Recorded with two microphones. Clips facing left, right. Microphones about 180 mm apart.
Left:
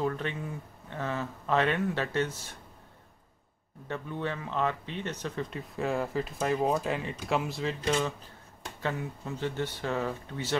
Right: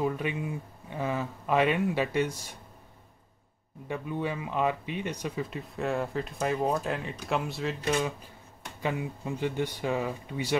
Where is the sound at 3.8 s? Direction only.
10° right (ahead or behind).